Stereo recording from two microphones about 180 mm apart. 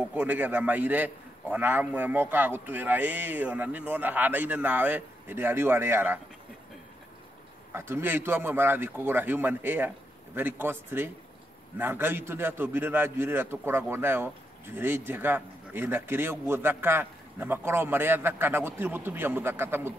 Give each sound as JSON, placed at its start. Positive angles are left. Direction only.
{"t": 0.1, "sound": "a man's voice", "side_deg": -10}
{"t": 7.7, "sound": "a man's voice", "side_deg": -10}